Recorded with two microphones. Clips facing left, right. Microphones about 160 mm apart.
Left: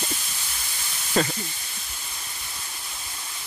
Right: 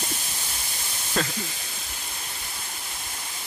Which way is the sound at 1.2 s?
5° left (ahead or behind).